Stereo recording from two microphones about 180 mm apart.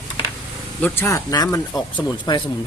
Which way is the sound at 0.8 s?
10° left (ahead or behind).